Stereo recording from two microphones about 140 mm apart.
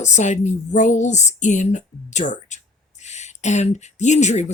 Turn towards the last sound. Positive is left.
turn(degrees=55)  # may be behind; listen again after turning